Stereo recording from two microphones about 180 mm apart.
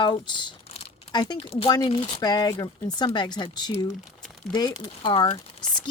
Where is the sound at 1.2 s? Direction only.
25° left (ahead or behind).